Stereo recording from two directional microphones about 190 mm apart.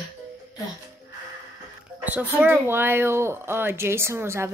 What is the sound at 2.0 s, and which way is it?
Music, 10° right (ahead or behind).